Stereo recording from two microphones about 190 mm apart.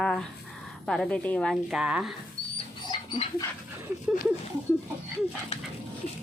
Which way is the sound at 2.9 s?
25° left (ahead or behind).